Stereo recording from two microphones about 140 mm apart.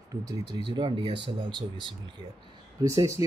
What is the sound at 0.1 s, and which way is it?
Speech, 30° right (ahead or behind).